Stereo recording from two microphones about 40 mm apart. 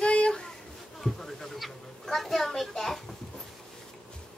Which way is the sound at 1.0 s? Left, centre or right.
Centre.